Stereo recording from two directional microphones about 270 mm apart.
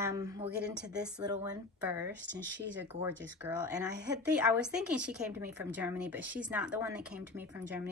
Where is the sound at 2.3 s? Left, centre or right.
Right.